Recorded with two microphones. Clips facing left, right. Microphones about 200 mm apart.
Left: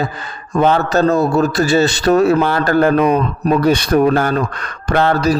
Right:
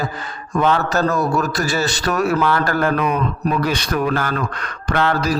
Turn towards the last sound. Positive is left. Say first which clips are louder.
# left 4 dB
turn(degrees=45)  # may be behind; listen again after turning